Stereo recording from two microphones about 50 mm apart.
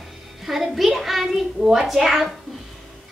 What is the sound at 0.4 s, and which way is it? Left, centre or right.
A woman's voice, centre.